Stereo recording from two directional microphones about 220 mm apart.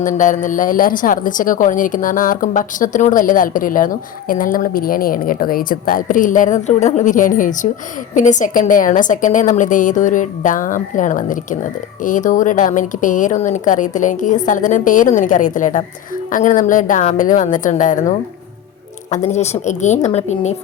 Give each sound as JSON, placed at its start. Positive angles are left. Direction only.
{"t": 0.0, "sound": "a woman's voice", "side_deg": 35}